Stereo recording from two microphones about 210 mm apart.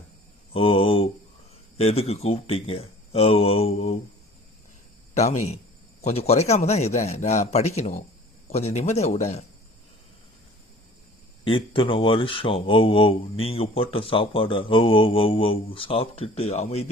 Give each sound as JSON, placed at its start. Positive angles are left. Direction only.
{"t": 0.5, "sound": "speech", "side_deg": 25}
{"t": 5.1, "sound": "speech", "side_deg": 35}
{"t": 11.4, "sound": "speech", "side_deg": 25}